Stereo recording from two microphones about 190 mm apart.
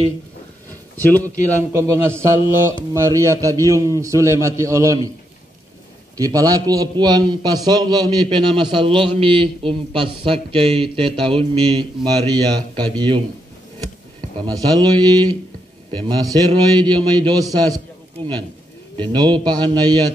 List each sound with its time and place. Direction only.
0.9 s speech: 10° left (ahead or behind)
1.8 s a man's voice: 15° right (ahead or behind)
6.1 s a man's voice: 20° right (ahead or behind)
14.4 s a man's voice: 20° right (ahead or behind)
18.9 s a man's voice: 25° right (ahead or behind)